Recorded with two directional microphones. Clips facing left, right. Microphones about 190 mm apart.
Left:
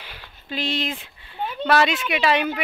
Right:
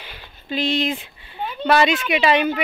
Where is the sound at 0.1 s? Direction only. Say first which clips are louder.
Right 5 dB; 5° left (ahead or behind).